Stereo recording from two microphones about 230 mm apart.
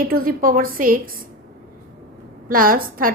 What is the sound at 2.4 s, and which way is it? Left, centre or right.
Speech, right.